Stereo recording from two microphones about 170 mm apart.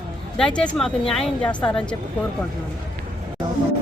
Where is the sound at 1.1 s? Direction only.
5° left (ahead or behind).